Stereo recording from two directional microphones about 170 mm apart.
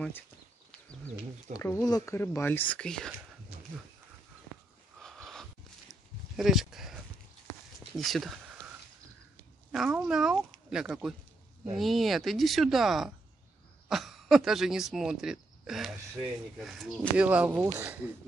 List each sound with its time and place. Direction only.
1.5 s speech: 15° left (ahead or behind)
5.0 s a sound: centre (ahead or behind)
8.0 s speech: centre (ahead or behind)
9.7 s speech: 5° right (ahead or behind)